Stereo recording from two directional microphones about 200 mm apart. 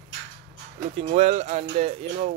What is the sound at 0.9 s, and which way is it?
Speech, 35° right (ahead or behind).